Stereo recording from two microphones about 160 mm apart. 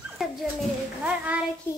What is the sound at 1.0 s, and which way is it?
Speech, 10° right (ahead or behind).